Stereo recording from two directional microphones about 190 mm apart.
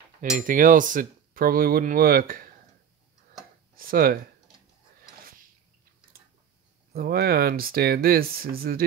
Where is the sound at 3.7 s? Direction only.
50° right (ahead or behind).